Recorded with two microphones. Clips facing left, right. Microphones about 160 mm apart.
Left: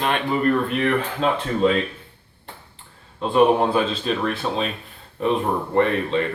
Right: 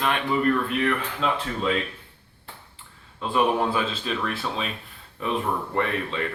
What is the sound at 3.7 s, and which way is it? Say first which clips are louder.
Speech: left 5 dB; 40° left (ahead or behind).